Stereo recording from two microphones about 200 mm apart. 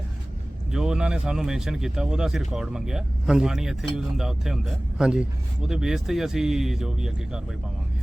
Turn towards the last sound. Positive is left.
turn(degrees=-5)  # may be behind; listen again after turning